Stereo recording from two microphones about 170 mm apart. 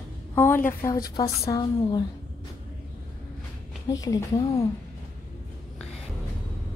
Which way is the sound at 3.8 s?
20° left (ahead or behind).